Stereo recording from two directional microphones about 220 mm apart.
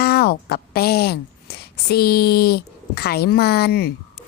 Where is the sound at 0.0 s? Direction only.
45° left (ahead or behind).